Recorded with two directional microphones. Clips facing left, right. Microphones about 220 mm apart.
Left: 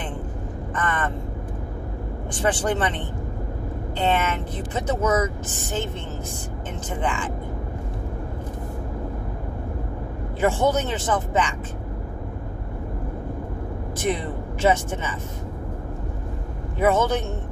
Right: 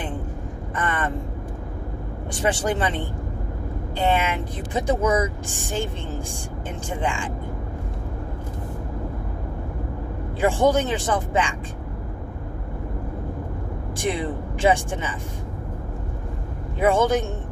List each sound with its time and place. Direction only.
0.7 s vehicle: 10° right (ahead or behind)
2.3 s speech: 10° right (ahead or behind)
10.4 s speech: 15° right (ahead or behind)
14.6 s speech: 15° right (ahead or behind)
16.8 s speech: 15° right (ahead or behind)